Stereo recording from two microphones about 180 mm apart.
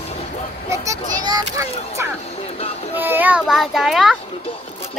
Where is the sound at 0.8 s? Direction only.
20° right (ahead or behind).